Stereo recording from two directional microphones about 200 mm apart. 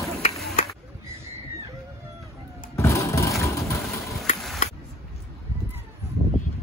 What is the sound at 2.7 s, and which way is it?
Vehicle, 15° left (ahead or behind).